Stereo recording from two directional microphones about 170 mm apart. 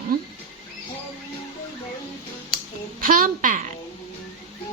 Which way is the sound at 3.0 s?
55° right (ahead or behind).